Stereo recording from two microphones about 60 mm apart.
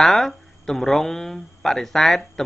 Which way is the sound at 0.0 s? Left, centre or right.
Centre.